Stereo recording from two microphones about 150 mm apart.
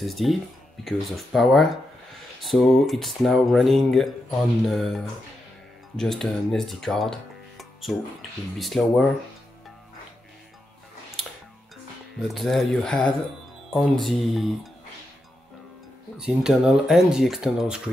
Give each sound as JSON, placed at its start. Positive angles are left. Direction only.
{"t": 0.0, "sound": "speech", "side_deg": 0}
{"t": 12.2, "sound": "speech", "side_deg": 0}
{"t": 16.2, "sound": "speech", "side_deg": -5}